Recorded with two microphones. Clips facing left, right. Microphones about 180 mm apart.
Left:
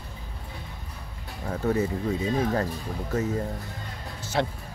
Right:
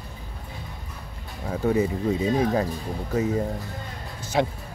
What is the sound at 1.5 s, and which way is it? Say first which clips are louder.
Speech: right 3 dB; 10° right (ahead or behind).